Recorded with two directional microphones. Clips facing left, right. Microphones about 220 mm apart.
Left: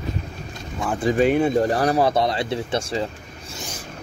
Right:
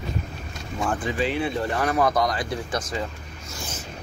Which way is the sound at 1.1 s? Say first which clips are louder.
Left 11 dB; 50° left (ahead or behind).